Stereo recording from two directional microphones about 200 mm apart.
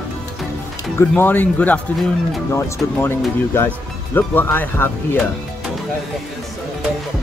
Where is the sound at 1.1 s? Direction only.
10° left (ahead or behind).